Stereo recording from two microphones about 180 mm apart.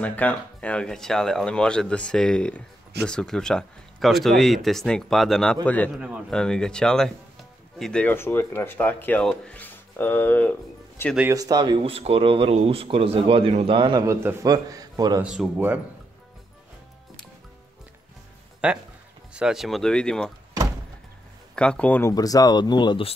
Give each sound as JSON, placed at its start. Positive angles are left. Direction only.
{"t": 0.0, "sound": "speech", "side_deg": 10}
{"t": 5.9, "sound": "speech", "side_deg": -5}
{"t": 6.3, "sound": "speech", "side_deg": 5}
{"t": 11.1, "sound": "a man's voice", "side_deg": -15}
{"t": 15.2, "sound": "speech", "side_deg": -5}
{"t": 18.6, "sound": "speech", "side_deg": -5}
{"t": 21.5, "sound": "speech", "side_deg": 5}
{"t": 22.1, "sound": "speech", "side_deg": 20}